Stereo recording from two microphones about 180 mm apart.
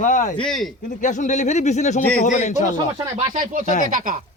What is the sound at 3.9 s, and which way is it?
Speech, 45° right (ahead or behind).